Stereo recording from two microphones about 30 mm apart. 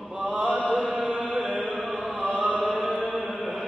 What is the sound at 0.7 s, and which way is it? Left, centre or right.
Chant, right.